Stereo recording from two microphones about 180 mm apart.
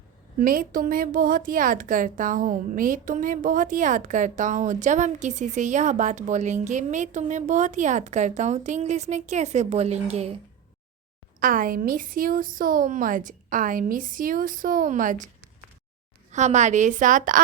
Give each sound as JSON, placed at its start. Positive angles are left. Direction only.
{"t": 0.3, "sound": "a woman's voice", "side_deg": -50}
{"t": 11.3, "sound": "a woman's voice", "side_deg": -50}
{"t": 16.3, "sound": "a woman's voice", "side_deg": -40}